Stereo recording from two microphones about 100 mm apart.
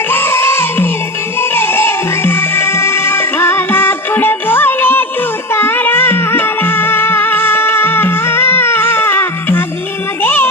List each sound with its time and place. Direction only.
0.1 s music: 25° left (ahead or behind)